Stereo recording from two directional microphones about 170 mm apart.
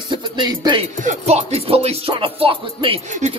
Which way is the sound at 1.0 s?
40° right (ahead or behind).